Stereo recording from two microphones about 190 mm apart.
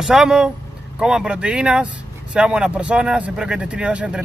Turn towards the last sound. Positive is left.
turn(degrees=-5)  # may be behind; listen again after turning